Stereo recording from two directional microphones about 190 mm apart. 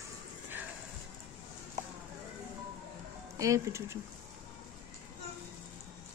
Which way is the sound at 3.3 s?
15° right (ahead or behind).